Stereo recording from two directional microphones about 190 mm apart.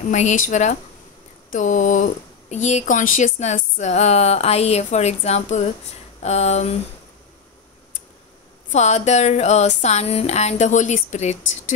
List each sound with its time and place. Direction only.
0.1 s speech: 40° left (ahead or behind)
8.7 s speech: 35° left (ahead or behind)